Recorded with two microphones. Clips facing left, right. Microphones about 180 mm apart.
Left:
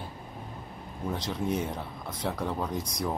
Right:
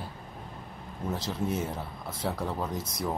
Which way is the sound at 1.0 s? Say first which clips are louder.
Left 1 dB; 5° right (ahead or behind).